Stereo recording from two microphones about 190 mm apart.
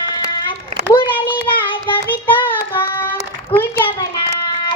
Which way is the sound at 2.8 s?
10° left (ahead or behind).